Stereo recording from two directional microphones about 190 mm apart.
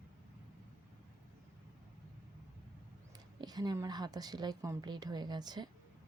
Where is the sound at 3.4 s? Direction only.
20° right (ahead or behind).